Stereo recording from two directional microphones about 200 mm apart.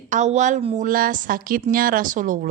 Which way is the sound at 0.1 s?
35° right (ahead or behind).